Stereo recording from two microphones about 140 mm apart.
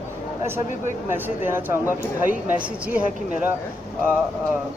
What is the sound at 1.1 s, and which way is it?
Speech, 15° right (ahead or behind).